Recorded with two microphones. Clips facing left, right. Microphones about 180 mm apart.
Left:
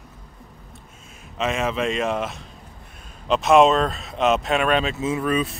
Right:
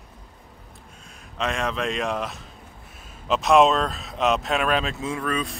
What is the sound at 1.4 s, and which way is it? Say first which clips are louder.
Speech: left 3 dB; 5° left (ahead or behind).